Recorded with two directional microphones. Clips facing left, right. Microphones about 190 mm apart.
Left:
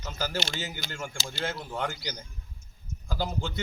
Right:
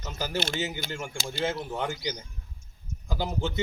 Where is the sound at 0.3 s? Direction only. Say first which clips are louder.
Right 6 dB; 55° right (ahead or behind).